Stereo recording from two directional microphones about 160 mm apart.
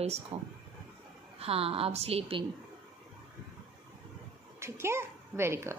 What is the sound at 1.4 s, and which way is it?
A woman's voice, 35° right (ahead or behind).